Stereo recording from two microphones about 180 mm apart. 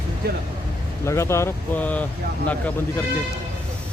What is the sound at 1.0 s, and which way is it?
Speech, 15° left (ahead or behind).